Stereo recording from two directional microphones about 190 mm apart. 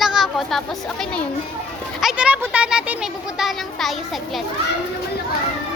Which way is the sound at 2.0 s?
5° right (ahead or behind).